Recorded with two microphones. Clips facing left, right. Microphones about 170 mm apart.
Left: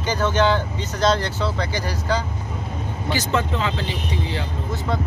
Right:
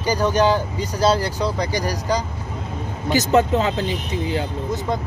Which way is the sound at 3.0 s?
45° right (ahead or behind).